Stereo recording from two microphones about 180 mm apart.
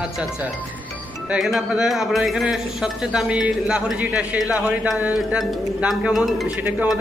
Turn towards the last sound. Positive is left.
turn(degrees=-10)  # may be behind; listen again after turning